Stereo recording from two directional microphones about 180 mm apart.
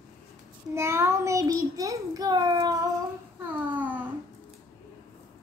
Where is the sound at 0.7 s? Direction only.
15° right (ahead or behind).